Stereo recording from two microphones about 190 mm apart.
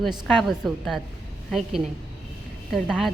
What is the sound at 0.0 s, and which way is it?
A woman's voice, centre (ahead or behind).